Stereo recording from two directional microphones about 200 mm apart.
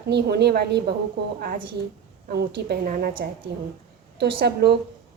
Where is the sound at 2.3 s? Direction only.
55° right (ahead or behind).